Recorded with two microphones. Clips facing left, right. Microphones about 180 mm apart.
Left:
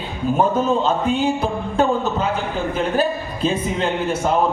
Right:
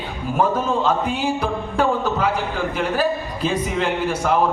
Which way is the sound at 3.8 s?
25° left (ahead or behind).